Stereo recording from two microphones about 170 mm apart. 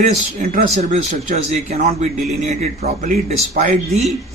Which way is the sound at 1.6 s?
40° right (ahead or behind).